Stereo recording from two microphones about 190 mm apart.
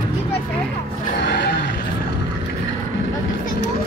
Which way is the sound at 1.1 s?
65° left (ahead or behind).